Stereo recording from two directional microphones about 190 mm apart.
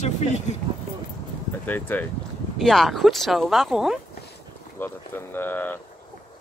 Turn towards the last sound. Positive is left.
turn(degrees=10)  # may be behind; listen again after turning